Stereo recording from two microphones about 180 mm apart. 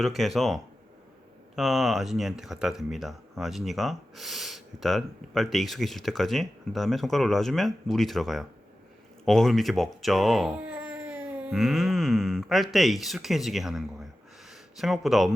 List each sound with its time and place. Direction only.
0.0 s speech: centre (ahead or behind)